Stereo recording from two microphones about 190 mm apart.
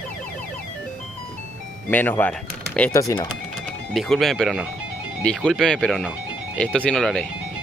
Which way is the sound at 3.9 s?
Centre (ahead or behind).